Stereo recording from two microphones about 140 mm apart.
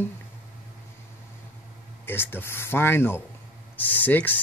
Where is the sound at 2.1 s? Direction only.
15° left (ahead or behind).